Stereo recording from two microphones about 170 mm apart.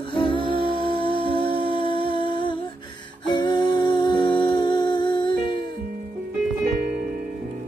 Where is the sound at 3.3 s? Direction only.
25° left (ahead or behind).